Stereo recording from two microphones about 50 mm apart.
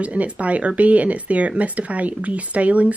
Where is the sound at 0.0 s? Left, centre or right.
Right.